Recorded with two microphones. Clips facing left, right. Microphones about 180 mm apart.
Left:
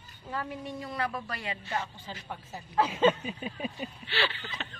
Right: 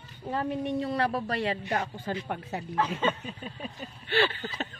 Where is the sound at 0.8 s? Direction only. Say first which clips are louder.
Right 6 dB; 30° right (ahead or behind).